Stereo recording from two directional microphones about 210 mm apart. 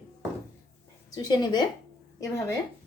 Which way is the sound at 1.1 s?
20° left (ahead or behind).